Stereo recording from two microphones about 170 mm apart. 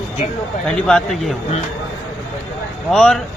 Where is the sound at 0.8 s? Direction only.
5° left (ahead or behind).